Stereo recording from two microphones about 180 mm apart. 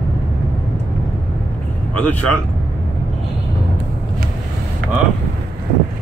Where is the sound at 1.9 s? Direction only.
5° left (ahead or behind).